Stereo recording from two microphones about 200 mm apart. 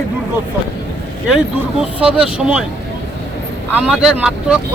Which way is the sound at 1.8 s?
5° right (ahead or behind).